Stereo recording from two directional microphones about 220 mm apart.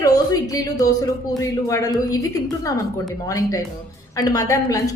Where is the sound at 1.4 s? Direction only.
15° left (ahead or behind).